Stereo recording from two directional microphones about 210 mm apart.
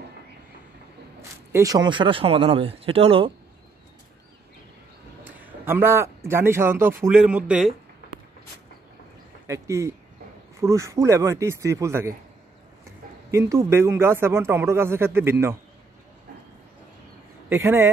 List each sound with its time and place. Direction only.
1.5 s speech: 15° right (ahead or behind)
5.2 s a man's voice: 10° right (ahead or behind)
9.5 s speech: 15° right (ahead or behind)
13.3 s speech: 15° right (ahead or behind)
17.5 s speech: 10° right (ahead or behind)